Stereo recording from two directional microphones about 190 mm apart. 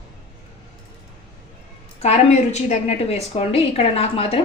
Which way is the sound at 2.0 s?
35° left (ahead or behind).